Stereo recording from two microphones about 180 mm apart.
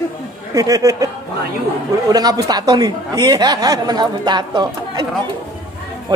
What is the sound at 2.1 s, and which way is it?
Speech, 20° right (ahead or behind).